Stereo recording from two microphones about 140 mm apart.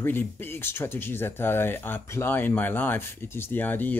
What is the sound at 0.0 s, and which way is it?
Speech, 15° left (ahead or behind).